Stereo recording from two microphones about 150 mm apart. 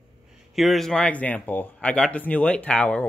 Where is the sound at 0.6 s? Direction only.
Centre (ahead or behind).